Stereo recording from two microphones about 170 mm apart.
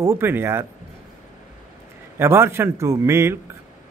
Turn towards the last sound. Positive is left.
turn(degrees=-15)  # may be behind; listen again after turning